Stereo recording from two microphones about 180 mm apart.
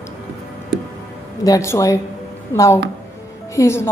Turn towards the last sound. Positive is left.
turn(degrees=15)  # may be behind; listen again after turning